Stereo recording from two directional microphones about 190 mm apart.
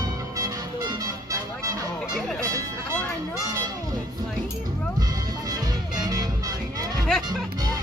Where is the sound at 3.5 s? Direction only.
15° right (ahead or behind).